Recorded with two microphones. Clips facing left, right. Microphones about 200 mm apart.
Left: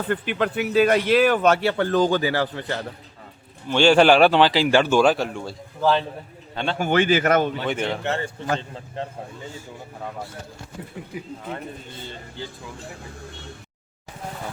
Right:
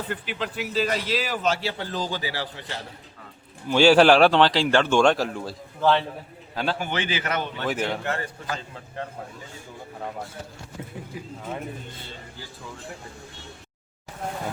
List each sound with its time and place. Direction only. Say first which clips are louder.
0.1 s a man's voice: left 7 dB; 55° left (ahead or behind)
3.7 s a man's voice: even; 5° right (ahead or behind)
6.7 s a man's voice: left 9 dB; 45° left (ahead or behind)
7.6 s speech: left 1 dB; centre (ahead or behind)
8.0 s a man's voice: left 4 dB; 25° left (ahead or behind)